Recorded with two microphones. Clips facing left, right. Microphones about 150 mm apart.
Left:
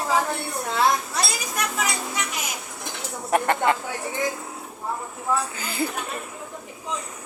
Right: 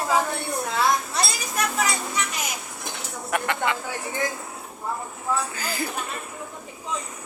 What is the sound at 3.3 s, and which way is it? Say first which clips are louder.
Speech: left 5 dB; 40° left (ahead or behind).